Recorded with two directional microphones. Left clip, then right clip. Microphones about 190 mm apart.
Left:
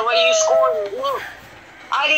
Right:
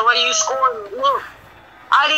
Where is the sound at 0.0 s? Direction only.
35° right (ahead or behind).